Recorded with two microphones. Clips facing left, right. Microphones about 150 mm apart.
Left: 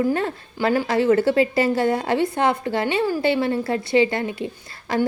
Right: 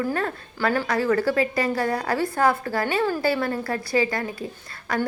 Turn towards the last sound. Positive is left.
turn(degrees=25)  # may be behind; listen again after turning